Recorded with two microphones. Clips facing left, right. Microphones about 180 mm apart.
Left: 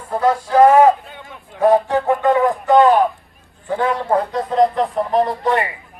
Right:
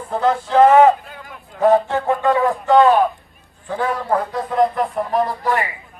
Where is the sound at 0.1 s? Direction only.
10° left (ahead or behind).